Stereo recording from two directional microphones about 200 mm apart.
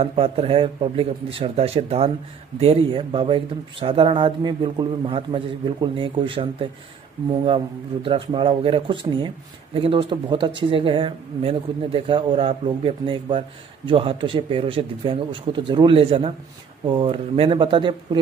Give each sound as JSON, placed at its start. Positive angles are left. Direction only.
{"t": 0.0, "sound": "speech", "side_deg": -30}